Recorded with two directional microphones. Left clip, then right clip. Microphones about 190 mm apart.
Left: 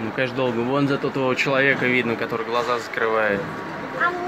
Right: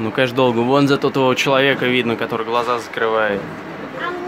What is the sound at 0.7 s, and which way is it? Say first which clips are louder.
Speech: right 7 dB; 30° right (ahead or behind).